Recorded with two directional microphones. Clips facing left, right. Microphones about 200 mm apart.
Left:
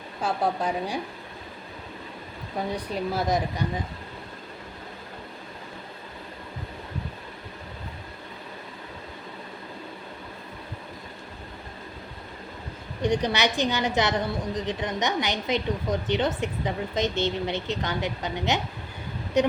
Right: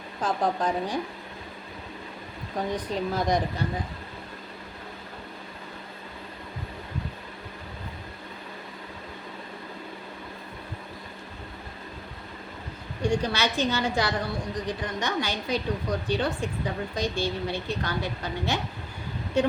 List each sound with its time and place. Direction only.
0.2 s a woman's voice: 10° left (ahead or behind)
2.7 s a woman's voice: 10° left (ahead or behind)
13.0 s a woman's voice: 20° left (ahead or behind)